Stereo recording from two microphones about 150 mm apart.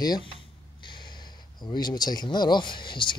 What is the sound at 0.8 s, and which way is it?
Snort, 30° left (ahead or behind).